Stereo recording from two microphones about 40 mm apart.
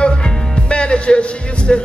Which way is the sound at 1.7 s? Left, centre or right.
Centre.